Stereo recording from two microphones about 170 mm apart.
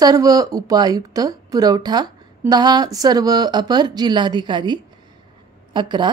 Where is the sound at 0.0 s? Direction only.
20° right (ahead or behind).